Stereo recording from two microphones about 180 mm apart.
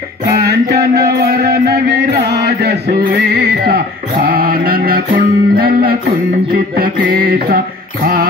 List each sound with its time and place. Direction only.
0.4 s music: 60° right (ahead or behind)
7.2 s mantra: 55° right (ahead or behind)